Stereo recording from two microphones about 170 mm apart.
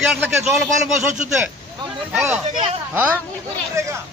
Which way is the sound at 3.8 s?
15° right (ahead or behind).